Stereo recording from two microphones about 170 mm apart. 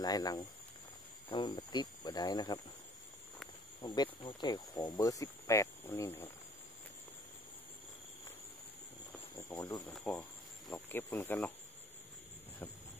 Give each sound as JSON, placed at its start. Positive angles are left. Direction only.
{"t": 0.0, "sound": "speech", "side_deg": 20}
{"t": 3.8, "sound": "speech", "side_deg": 25}
{"t": 9.5, "sound": "speech", "side_deg": 20}
{"t": 9.8, "sound": "speech", "side_deg": 5}